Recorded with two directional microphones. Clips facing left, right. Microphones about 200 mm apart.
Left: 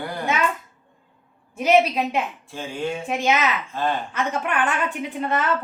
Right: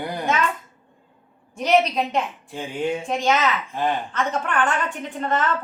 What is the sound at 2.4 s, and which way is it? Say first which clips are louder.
Speech: right 2 dB; 15° right (ahead or behind).